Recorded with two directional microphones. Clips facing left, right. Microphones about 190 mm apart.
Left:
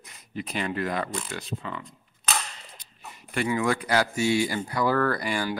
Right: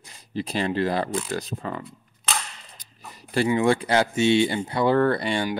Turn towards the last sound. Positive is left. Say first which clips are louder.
# right 4 dB
turn(degrees=-25)  # may be behind; listen again after turning